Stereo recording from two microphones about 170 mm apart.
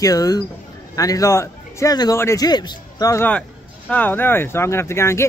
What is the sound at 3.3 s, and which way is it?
Speech, 10° left (ahead or behind).